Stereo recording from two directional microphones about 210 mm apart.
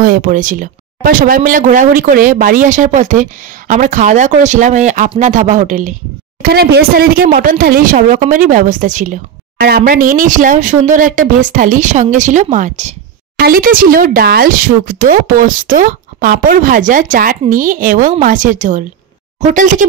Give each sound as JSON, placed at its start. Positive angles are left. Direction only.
{"t": 0.0, "sound": "speech", "side_deg": -40}
{"t": 6.4, "sound": "speech", "side_deg": -50}